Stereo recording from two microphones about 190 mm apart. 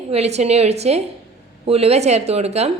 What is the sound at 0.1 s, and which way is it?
A woman's voice, 35° right (ahead or behind).